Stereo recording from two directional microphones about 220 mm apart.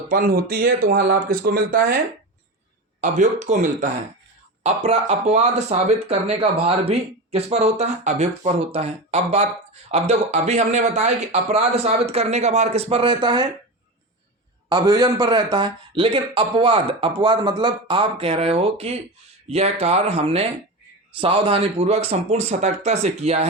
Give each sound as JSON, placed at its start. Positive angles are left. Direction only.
{"t": 0.1, "sound": "speech", "side_deg": -40}
{"t": 3.0, "sound": "speech", "side_deg": -35}
{"t": 14.7, "sound": "speech", "side_deg": -20}